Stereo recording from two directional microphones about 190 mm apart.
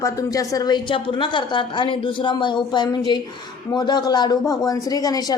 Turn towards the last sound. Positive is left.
turn(degrees=20)  # may be behind; listen again after turning